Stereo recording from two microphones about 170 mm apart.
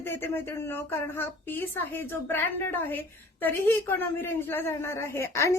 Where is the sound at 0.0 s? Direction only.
15° left (ahead or behind).